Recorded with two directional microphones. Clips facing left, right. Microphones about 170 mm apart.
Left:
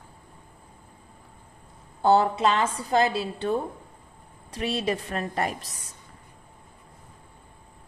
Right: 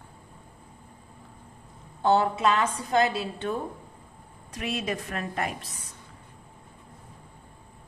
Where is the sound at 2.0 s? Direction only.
35° left (ahead or behind).